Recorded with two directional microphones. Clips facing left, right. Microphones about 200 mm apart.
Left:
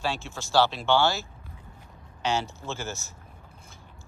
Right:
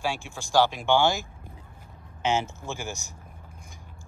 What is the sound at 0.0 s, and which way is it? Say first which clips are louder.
Speech: even; 15° right (ahead or behind).